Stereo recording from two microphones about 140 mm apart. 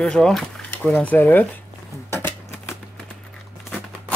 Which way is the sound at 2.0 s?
15° left (ahead or behind).